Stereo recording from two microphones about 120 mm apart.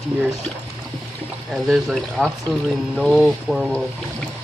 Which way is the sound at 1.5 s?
Centre (ahead or behind).